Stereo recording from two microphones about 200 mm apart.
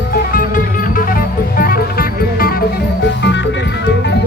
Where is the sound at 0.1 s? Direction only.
45° left (ahead or behind).